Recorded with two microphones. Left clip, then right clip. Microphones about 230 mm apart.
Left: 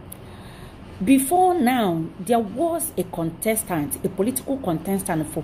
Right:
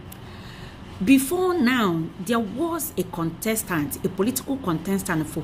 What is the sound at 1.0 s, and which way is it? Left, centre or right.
A woman's voice, centre.